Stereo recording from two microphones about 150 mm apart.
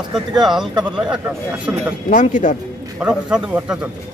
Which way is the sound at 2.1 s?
60° left (ahead or behind).